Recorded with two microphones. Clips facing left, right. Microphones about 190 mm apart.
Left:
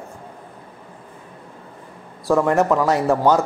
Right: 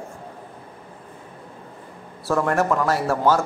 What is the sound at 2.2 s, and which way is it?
Speech, 15° left (ahead or behind).